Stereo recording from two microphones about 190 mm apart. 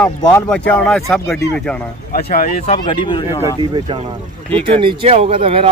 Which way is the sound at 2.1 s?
50° left (ahead or behind).